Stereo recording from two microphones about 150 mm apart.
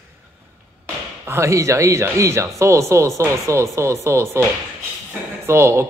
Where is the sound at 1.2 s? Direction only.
20° right (ahead or behind).